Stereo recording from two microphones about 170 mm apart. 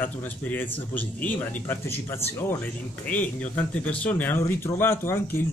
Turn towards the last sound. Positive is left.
turn(degrees=15)  # may be behind; listen again after turning